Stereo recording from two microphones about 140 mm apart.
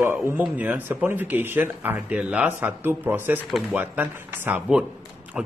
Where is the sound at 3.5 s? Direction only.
Centre (ahead or behind).